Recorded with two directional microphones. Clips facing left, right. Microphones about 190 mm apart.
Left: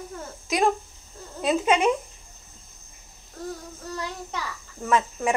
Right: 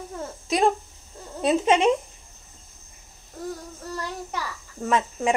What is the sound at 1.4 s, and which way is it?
Speech, 25° right (ahead or behind).